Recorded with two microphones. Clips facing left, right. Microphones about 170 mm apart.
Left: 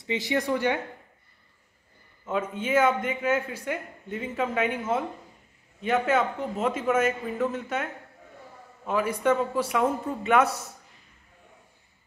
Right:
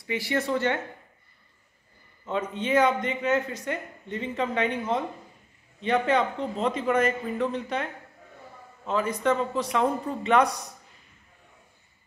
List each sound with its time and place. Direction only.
0.0 s speech: 20° left (ahead or behind)
2.2 s a man's voice: 5° left (ahead or behind)